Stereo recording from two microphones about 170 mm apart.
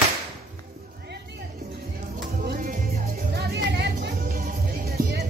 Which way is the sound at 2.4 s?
55° right (ahead or behind).